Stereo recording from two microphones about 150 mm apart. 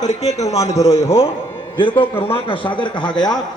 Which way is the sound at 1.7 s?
35° left (ahead or behind).